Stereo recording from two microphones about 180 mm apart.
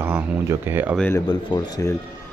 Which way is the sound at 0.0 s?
10° right (ahead or behind).